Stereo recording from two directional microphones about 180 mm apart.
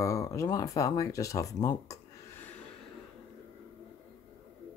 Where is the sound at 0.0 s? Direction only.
15° left (ahead or behind).